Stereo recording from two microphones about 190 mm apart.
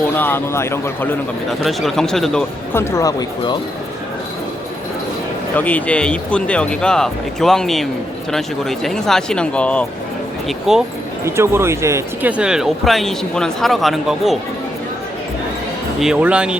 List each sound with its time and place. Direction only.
0.2 s a man's voice: 10° left (ahead or behind)
1.5 s speech: centre (ahead or behind)
2.7 s a man's voice: 15° left (ahead or behind)
5.5 s speech: 10° left (ahead or behind)
11.3 s speech: 15° right (ahead or behind)
16.0 s speech: 5° right (ahead or behind)